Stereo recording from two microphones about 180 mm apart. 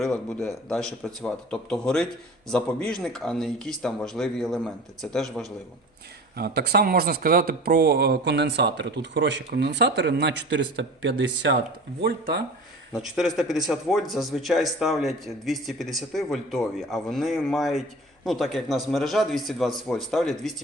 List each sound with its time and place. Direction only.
0.0 s a man's voice: centre (ahead or behind)
6.3 s speech: 60° right (ahead or behind); by 11.5 s 90° right
11.9 s speech: 65° right (ahead or behind)
13.0 s a man's voice: centre (ahead or behind)